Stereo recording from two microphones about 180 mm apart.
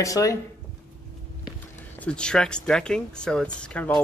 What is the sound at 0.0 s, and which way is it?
Speech, 20° left (ahead or behind).